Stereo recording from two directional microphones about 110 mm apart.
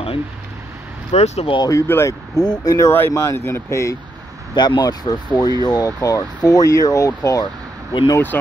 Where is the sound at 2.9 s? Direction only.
20° left (ahead or behind).